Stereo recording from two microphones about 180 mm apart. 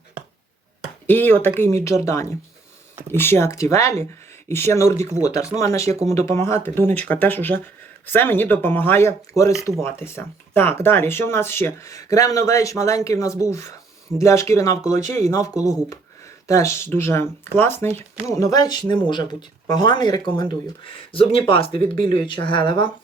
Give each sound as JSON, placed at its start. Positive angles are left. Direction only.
{"t": 1.0, "sound": "speech", "side_deg": 10}
{"t": 3.1, "sound": "speech", "side_deg": 15}